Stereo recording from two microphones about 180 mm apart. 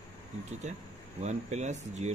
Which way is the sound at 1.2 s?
40° right (ahead or behind).